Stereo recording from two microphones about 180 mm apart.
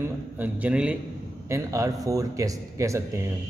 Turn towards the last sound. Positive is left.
turn(degrees=-15)  # may be behind; listen again after turning